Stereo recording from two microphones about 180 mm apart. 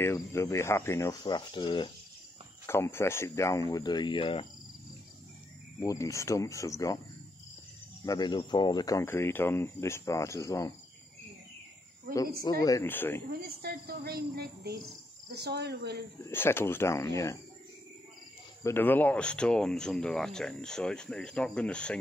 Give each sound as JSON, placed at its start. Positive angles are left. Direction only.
{"t": 0.0, "sound": "speech", "side_deg": 15}
{"t": 2.6, "sound": "speech", "side_deg": 15}
{"t": 5.8, "sound": "speech", "side_deg": 20}
{"t": 8.0, "sound": "speech", "side_deg": 20}
{"t": 12.4, "sound": "speech", "side_deg": 20}
{"t": 13.3, "sound": "a woman's voice", "side_deg": -60}
{"t": 16.2, "sound": "speech", "side_deg": 15}
{"t": 18.6, "sound": "speech", "side_deg": 10}